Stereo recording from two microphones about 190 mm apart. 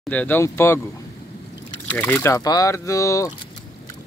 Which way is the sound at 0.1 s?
10° left (ahead or behind).